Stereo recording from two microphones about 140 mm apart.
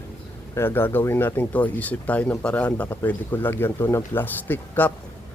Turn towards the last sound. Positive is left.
turn(degrees=15)  # may be behind; listen again after turning